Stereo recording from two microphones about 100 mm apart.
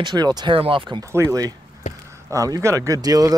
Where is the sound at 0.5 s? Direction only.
65° right (ahead or behind).